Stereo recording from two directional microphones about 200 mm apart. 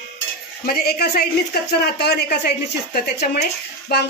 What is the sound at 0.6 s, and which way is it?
A woman's voice, 50° left (ahead or behind).